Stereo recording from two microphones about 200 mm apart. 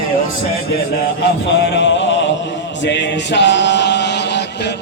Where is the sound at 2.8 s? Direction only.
60° left (ahead or behind).